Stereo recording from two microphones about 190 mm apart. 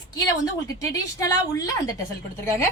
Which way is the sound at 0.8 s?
15° left (ahead or behind).